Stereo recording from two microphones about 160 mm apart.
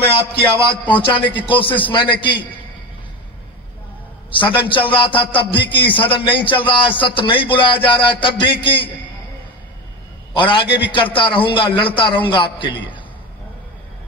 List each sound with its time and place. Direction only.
0.3 s a man's voice: 30° left (ahead or behind)
4.3 s a man's voice: 30° left (ahead or behind)
10.3 s a man's voice: 30° left (ahead or behind)